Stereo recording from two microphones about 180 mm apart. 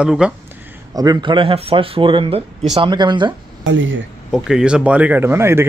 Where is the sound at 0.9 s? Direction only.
20° right (ahead or behind).